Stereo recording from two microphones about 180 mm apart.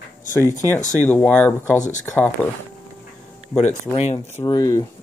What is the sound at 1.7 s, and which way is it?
Speech, 45° left (ahead or behind).